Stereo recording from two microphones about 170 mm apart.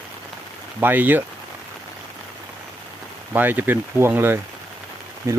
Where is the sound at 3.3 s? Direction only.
10° right (ahead or behind).